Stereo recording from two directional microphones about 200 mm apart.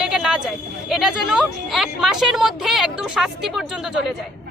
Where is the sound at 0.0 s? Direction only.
5° right (ahead or behind).